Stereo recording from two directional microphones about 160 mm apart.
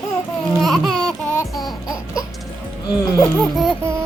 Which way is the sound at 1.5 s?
Centre (ahead or behind).